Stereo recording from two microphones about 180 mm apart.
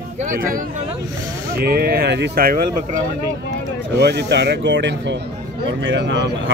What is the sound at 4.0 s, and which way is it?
Speech, 70° right (ahead or behind).